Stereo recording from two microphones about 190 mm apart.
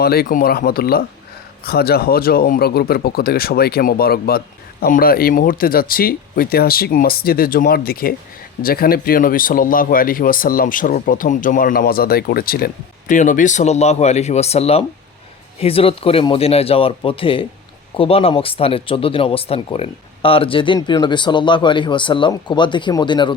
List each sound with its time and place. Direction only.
0.0 s speech: 55° left (ahead or behind); by 23.3 s 25° left (ahead or behind)